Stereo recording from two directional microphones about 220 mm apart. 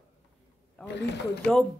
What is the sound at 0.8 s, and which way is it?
Speech, 50° left (ahead or behind).